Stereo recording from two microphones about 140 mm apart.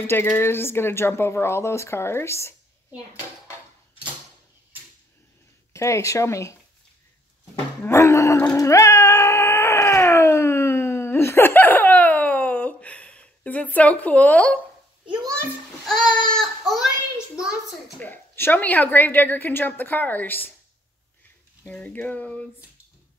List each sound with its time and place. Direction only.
0.0 s a woman's voice: 15° left (ahead or behind)
5.7 s speech: 20° left (ahead or behind)
7.8 s speech: 20° left (ahead or behind)
8.5 s a sound: 20° left (ahead or behind)
15.8 s child singing: 5° left (ahead or behind)
17.4 s a child's voice: 5° right (ahead or behind)
17.9 s a woman's voice: 15° left (ahead or behind)
21.6 s a woman's voice: 10° left (ahead or behind)